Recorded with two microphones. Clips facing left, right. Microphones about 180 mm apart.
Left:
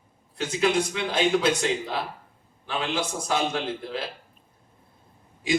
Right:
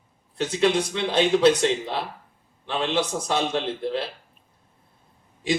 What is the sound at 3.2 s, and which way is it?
Speech, 30° right (ahead or behind).